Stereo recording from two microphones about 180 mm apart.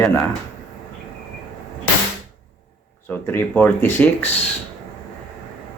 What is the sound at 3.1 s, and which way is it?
Speech, 10° left (ahead or behind).